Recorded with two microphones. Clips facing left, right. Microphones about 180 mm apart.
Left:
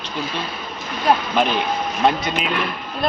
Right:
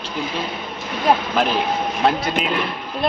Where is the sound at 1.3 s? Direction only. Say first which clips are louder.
Even; centre (ahead or behind).